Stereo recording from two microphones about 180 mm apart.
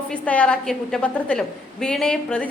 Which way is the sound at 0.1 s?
5° left (ahead or behind).